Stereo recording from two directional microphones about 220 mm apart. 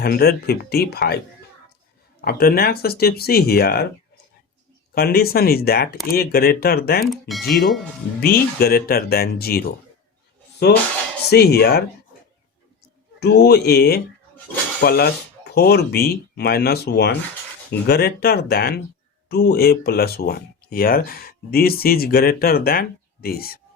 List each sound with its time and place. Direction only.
0.0 s speech: 45° left (ahead or behind)
2.2 s speech: 45° left (ahead or behind)
4.9 s speech: 45° left (ahead or behind)
7.0 s speech: centre (ahead or behind)
8.2 s speech: 45° left (ahead or behind)
11.3 s speech: 45° left (ahead or behind)
13.1 s speech: 45° left (ahead or behind)